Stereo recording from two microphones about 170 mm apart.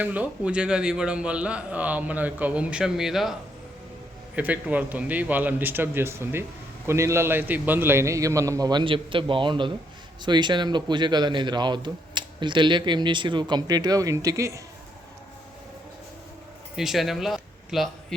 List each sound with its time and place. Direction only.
0.0 s a man's voice: 10° right (ahead or behind)
4.4 s a man's voice: 10° right (ahead or behind)
16.7 s speech: centre (ahead or behind)